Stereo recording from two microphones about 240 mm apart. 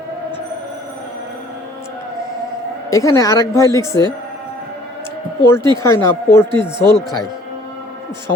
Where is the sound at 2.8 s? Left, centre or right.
Centre.